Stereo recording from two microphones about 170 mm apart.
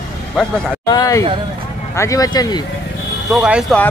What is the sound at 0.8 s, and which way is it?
Speech, 20° left (ahead or behind).